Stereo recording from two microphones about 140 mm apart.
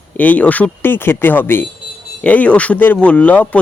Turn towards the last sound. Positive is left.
turn(degrees=10)  # may be behind; listen again after turning